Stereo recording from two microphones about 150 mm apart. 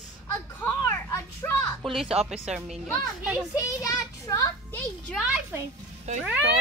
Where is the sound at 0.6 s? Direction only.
15° left (ahead or behind).